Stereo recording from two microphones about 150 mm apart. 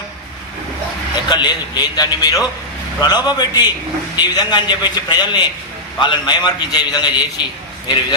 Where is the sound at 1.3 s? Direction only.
30° left (ahead or behind).